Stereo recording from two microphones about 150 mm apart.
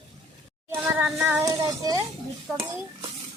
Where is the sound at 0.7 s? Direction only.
15° right (ahead or behind).